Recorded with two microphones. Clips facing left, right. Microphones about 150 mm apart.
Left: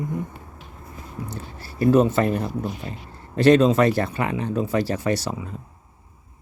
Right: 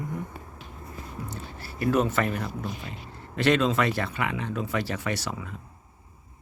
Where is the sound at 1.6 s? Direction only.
30° left (ahead or behind).